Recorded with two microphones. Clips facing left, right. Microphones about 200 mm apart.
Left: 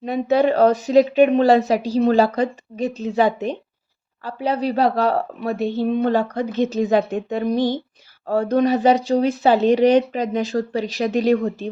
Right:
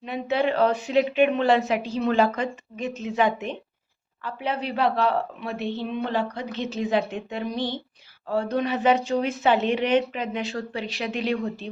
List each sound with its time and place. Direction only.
0.0 s a woman's voice: 40° left (ahead or behind)